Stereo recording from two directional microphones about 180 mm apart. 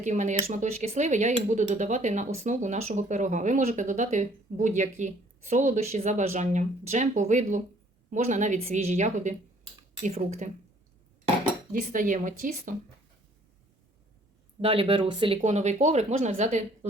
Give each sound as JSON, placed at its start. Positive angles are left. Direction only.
{"t": 0.0, "sound": "speech", "side_deg": -40}
{"t": 11.7, "sound": "speech", "side_deg": -50}
{"t": 14.6, "sound": "speech", "side_deg": -30}
{"t": 15.4, "sound": "speech", "side_deg": -40}